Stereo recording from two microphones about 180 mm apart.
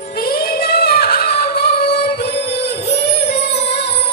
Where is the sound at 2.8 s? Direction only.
65° left (ahead or behind).